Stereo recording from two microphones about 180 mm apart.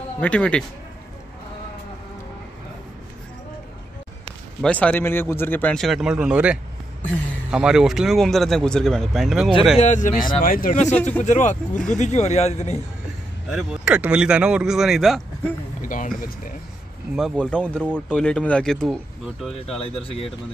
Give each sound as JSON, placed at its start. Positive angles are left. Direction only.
{"t": 0.2, "sound": "speech", "side_deg": 5}
{"t": 4.6, "sound": "speech", "side_deg": 5}
{"t": 9.8, "sound": "a man's voice", "side_deg": 45}
{"t": 13.5, "sound": "speech", "side_deg": -5}
{"t": 15.8, "sound": "speech", "side_deg": 45}
{"t": 17.1, "sound": "speech", "side_deg": 5}